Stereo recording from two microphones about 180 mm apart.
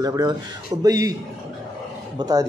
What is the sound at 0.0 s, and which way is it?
A man's voice, 20° right (ahead or behind).